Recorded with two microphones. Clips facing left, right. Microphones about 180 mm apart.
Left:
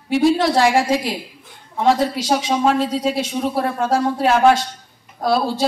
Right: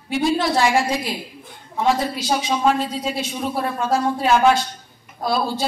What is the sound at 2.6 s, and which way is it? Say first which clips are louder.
Speech: left 3 dB; 75° left (ahead or behind).